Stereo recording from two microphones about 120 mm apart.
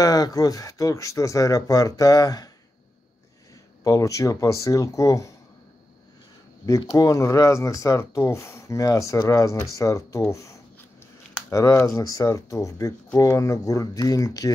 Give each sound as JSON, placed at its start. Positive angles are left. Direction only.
{"t": 0.0, "sound": "speech", "side_deg": 30}
{"t": 3.8, "sound": "speech", "side_deg": 30}
{"t": 7.0, "sound": "speech", "side_deg": 25}